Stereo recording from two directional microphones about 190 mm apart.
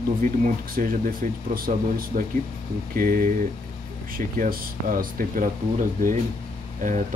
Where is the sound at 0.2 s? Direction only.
45° right (ahead or behind).